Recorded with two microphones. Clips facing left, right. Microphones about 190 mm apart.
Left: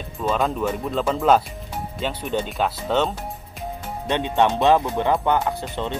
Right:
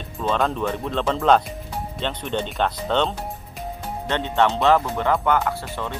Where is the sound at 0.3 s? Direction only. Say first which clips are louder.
Even; 5° left (ahead or behind).